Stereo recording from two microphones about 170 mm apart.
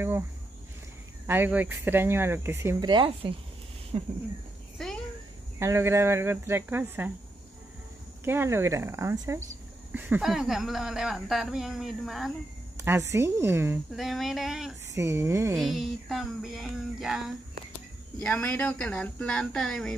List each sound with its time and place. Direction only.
1.2 s speech: 10° right (ahead or behind)
2.9 s speech: 30° right (ahead or behind)
4.7 s a sound: centre (ahead or behind)
5.6 s speech: 15° right (ahead or behind)
8.2 s speech: 15° right (ahead or behind)
12.7 s speech: 15° right (ahead or behind)
13.9 s speech: centre (ahead or behind)
15.0 s speech: 15° right (ahead or behind)
15.5 s speech: centre (ahead or behind)